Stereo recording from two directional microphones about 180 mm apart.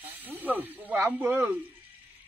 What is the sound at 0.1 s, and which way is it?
Speech, 10° right (ahead or behind).